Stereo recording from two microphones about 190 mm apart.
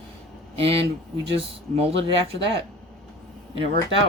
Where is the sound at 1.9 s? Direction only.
70° right (ahead or behind).